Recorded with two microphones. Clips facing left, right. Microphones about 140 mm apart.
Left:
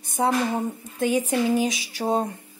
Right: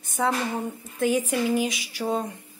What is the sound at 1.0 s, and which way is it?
A woman's voice, 30° left (ahead or behind).